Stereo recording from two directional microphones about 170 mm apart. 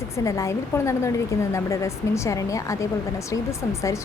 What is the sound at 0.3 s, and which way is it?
Speech, 15° left (ahead or behind).